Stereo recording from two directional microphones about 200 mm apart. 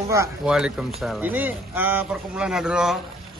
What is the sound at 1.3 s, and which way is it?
Speech, 10° right (ahead or behind).